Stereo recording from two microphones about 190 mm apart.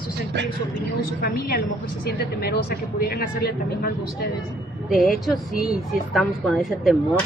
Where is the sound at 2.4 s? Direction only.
55° left (ahead or behind).